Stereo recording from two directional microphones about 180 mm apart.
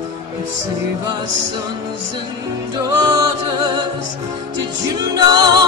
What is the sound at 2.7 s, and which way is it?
Music, 25° right (ahead or behind).